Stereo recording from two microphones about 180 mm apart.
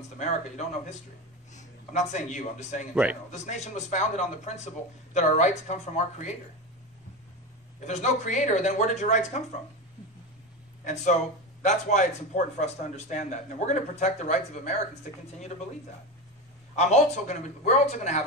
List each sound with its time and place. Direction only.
0.2 s a man's voice: 40° left (ahead or behind)
2.9 s a man's voice: 5° right (ahead or behind)
3.3 s a man's voice: 40° left (ahead or behind)
7.8 s a man's voice: 40° left (ahead or behind)
10.8 s a man's voice: 40° left (ahead or behind)
16.7 s a man's voice: 40° left (ahead or behind)